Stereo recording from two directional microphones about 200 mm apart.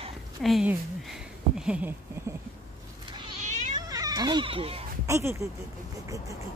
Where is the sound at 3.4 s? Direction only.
35° right (ahead or behind).